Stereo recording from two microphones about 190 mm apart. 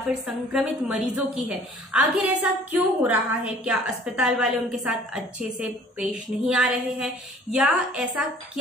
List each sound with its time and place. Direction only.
0.1 s a woman's voice: 5° right (ahead or behind)